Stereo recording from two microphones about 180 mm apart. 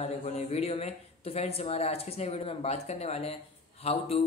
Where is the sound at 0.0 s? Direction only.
35° left (ahead or behind).